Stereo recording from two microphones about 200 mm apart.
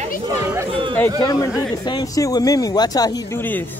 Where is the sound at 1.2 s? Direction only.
20° left (ahead or behind).